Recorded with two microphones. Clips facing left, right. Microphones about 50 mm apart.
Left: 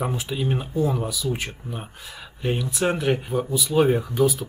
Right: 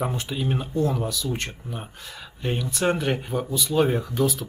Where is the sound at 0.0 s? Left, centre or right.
Centre.